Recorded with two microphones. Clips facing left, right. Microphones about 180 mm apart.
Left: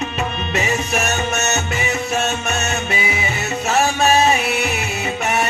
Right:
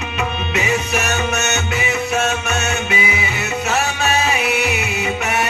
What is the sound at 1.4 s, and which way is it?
Music, 35° left (ahead or behind).